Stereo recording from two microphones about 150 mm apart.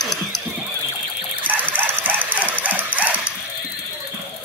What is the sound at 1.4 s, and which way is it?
Dog, 10° right (ahead or behind).